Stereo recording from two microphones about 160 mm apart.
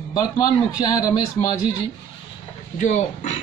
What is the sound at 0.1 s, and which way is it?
A man's voice, 25° left (ahead or behind).